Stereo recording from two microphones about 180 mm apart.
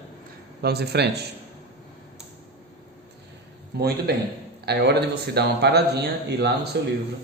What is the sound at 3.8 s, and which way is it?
A man's voice, 60° right (ahead or behind).